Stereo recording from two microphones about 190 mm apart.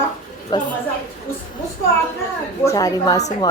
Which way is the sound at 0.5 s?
20° left (ahead or behind).